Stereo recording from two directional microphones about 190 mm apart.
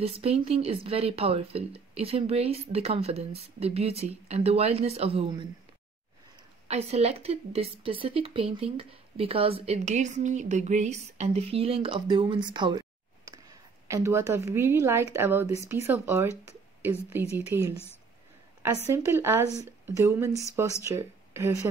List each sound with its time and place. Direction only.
0.0 s a woman's voice: 30° right (ahead or behind)
6.7 s a woman's voice: 35° right (ahead or behind); by 17.7 s 15° right (ahead or behind)
18.9 s speech: 15° right (ahead or behind)